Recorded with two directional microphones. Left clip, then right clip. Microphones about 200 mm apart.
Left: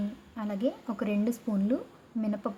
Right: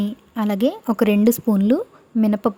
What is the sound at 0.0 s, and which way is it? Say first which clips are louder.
A woman's voice: right 12 dB; 55° right (ahead or behind).